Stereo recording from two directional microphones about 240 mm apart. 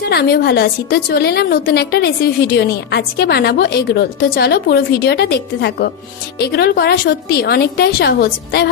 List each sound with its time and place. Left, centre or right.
0.0 s a woman's voice: left